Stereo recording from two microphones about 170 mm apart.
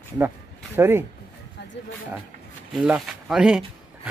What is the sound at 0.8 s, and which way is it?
Speech, 15° right (ahead or behind).